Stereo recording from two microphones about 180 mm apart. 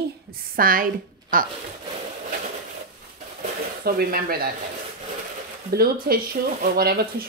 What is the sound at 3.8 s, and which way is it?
Speech, 55° right (ahead or behind).